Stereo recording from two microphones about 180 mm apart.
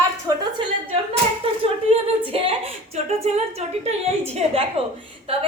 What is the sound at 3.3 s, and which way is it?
A woman's voice, 40° right (ahead or behind).